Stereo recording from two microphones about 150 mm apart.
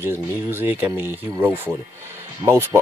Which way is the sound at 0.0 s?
15° right (ahead or behind).